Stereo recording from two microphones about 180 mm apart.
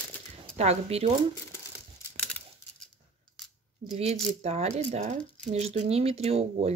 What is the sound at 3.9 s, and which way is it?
Speech, 35° right (ahead or behind).